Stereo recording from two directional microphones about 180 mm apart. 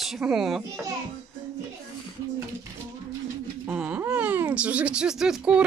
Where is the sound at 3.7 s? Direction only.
5° right (ahead or behind).